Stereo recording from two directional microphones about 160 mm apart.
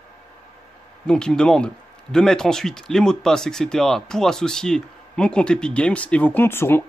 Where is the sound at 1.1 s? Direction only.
5° left (ahead or behind).